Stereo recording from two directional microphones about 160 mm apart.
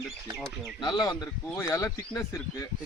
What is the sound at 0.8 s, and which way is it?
Speech, 25° left (ahead or behind).